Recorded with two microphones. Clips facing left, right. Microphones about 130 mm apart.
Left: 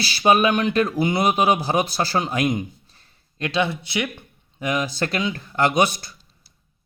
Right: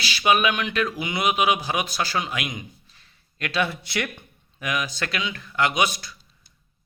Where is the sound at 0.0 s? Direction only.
35° left (ahead or behind).